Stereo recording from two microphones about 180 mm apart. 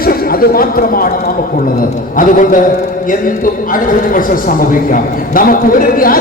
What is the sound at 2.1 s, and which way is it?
A man's voice, 45° left (ahead or behind).